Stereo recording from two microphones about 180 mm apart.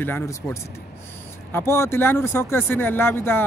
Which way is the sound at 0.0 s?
10° left (ahead or behind).